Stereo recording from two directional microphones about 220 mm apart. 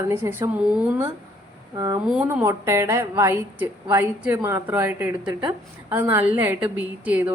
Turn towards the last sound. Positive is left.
turn(degrees=-5)  # may be behind; listen again after turning